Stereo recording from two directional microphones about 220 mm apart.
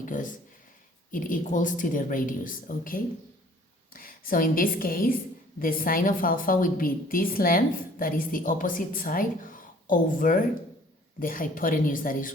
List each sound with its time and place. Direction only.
0.0 s a woman's voice: 35° left (ahead or behind)